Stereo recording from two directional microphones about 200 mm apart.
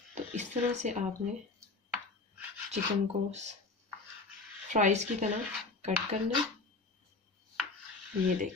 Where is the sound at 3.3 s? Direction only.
35° right (ahead or behind).